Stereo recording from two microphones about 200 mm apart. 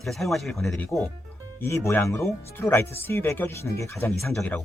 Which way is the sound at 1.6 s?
15° left (ahead or behind).